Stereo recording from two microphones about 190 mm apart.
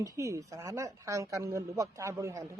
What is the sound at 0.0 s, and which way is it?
A man's voice, 15° right (ahead or behind).